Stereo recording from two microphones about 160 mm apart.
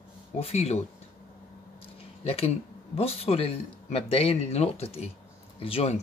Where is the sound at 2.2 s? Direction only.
40° left (ahead or behind).